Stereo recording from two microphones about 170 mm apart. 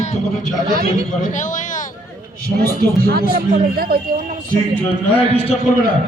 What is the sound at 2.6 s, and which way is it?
A man's voice, 60° right (ahead or behind).